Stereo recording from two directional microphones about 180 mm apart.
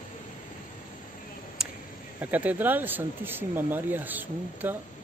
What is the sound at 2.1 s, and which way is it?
Speech, 10° right (ahead or behind).